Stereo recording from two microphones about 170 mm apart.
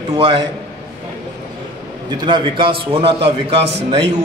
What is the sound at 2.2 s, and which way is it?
A man's voice, 30° right (ahead or behind).